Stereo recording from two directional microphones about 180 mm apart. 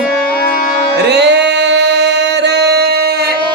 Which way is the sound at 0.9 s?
70° right (ahead or behind).